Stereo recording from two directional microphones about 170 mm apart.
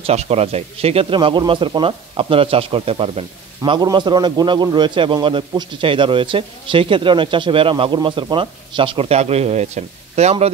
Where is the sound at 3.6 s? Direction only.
25° right (ahead or behind).